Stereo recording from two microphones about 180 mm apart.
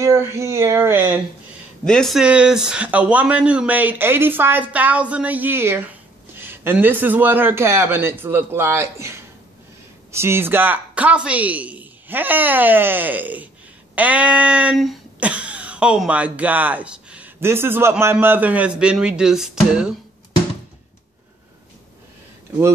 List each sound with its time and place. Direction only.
0.0 s speech: 15° right (ahead or behind)
1.9 s speech: centre (ahead or behind)